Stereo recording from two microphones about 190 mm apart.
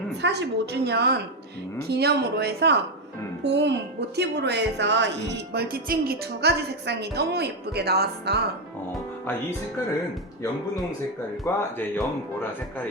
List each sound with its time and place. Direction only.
0.2 s speech: 60° right (ahead or behind)
11.5 s speech: 15° left (ahead or behind)